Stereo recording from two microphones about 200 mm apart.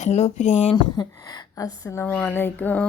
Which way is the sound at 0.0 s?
35° left (ahead or behind).